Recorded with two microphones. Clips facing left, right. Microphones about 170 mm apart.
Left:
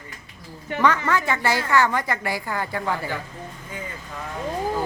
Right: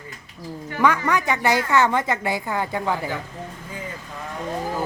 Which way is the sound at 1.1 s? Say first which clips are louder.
Right 2 dB; 15° right (ahead or behind).